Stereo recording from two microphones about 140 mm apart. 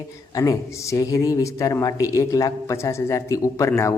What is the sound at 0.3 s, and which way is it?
Speech, 25° left (ahead or behind).